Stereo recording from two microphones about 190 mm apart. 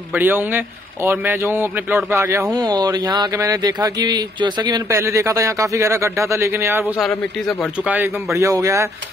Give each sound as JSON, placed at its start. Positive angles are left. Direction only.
{"t": 0.1, "sound": "speech", "side_deg": -10}
{"t": 7.0, "sound": "a man's voice", "side_deg": 0}
{"t": 7.9, "sound": "speech", "side_deg": -10}